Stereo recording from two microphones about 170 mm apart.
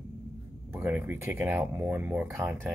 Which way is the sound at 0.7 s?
10° right (ahead or behind).